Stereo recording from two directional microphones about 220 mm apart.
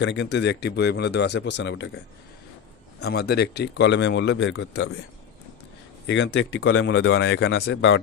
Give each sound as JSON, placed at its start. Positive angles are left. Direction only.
{"t": 0.0, "sound": "speech", "side_deg": 50}
{"t": 3.0, "sound": "speech", "side_deg": 45}
{"t": 6.1, "sound": "speech", "side_deg": 55}